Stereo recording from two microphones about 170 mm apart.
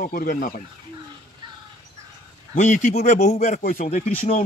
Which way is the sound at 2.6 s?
45° left (ahead or behind).